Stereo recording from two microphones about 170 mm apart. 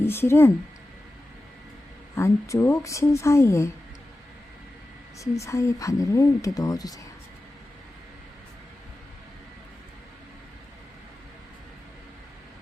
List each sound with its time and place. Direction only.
0.0 s a woman's voice: 15° left (ahead or behind)
2.1 s a woman's voice: 15° left (ahead or behind)
5.2 s a woman's voice: 20° left (ahead or behind)